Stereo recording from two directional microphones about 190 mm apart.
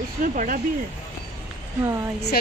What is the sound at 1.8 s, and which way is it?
Speech, 15° right (ahead or behind).